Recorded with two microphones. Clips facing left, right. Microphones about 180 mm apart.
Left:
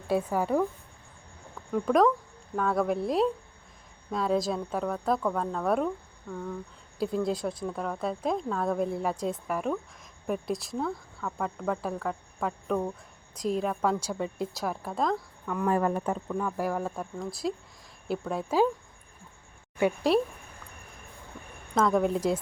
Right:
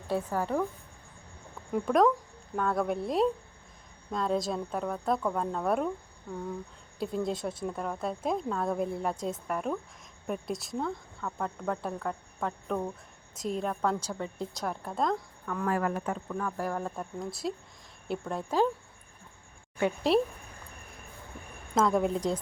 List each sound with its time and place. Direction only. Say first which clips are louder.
0.1 s a woman's voice: left 3 dB; 10° left (ahead or behind)
1.7 s speech: left 1 dB; centre (ahead or behind)
7.0 s speech: left 3 dB; centre (ahead or behind)
15.6 s speech: left 3 dB; 25° left (ahead or behind)
16.3 s speech: left 3 dB; 10° left (ahead or behind)
20.1 s speech: even; centre (ahead or behind)
21.8 s speech: left 1 dB; centre (ahead or behind)